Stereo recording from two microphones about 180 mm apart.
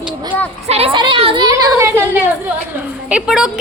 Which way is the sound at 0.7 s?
30° right (ahead or behind).